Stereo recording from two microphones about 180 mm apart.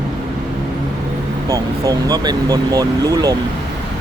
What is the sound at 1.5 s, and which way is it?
Speech, 20° right (ahead or behind).